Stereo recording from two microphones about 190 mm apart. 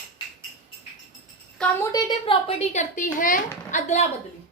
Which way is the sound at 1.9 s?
30° left (ahead or behind).